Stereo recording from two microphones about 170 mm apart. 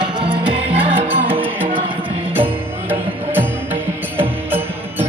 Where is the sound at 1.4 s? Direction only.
10° right (ahead or behind).